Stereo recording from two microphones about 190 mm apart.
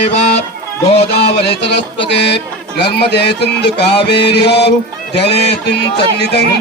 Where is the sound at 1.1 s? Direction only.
60° left (ahead or behind).